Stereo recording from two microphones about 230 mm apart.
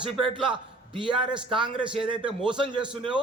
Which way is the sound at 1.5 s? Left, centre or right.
Right.